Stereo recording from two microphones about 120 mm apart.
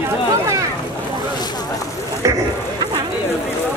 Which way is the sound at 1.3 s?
35° left (ahead or behind).